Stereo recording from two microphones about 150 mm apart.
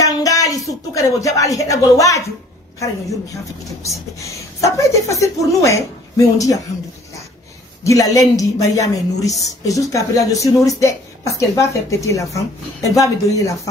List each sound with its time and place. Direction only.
0.2 s a sound: 25° left (ahead or behind)
0.9 s a woman's voice: 20° left (ahead or behind)
3.6 s a woman's voice: 20° left (ahead or behind)
7.8 s a woman's voice: 20° left (ahead or behind)